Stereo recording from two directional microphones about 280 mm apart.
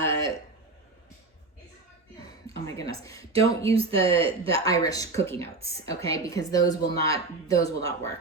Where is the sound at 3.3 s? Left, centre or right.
Right.